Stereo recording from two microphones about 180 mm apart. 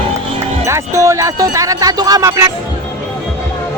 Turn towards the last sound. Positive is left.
turn(degrees=-15)  # may be behind; listen again after turning